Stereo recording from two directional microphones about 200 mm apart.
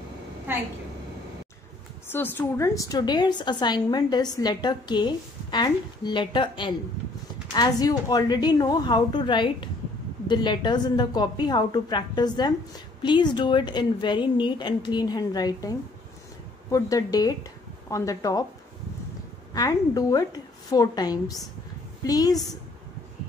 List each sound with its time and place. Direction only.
2.1 s a woman's voice: 10° left (ahead or behind)
16.7 s speech: 15° left (ahead or behind)
19.5 s a woman's voice: 20° left (ahead or behind)